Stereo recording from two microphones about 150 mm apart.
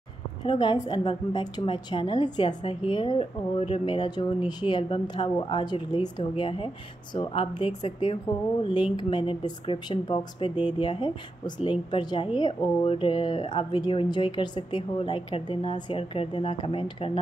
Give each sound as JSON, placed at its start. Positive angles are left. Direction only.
{"t": 0.4, "sound": "a woman's voice", "side_deg": 30}
{"t": 13.7, "sound": "a woman's voice", "side_deg": 30}